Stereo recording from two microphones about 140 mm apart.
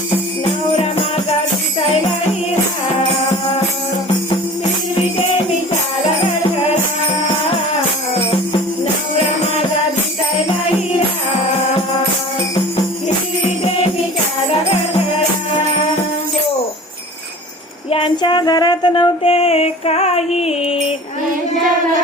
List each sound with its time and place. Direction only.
9.1 s music: 50° left (ahead or behind)
17.9 s music: 35° left (ahead or behind)